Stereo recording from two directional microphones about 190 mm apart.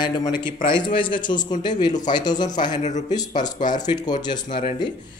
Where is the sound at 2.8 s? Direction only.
40° left (ahead or behind).